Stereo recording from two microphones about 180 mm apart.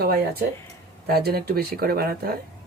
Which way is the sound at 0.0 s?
60° right (ahead or behind).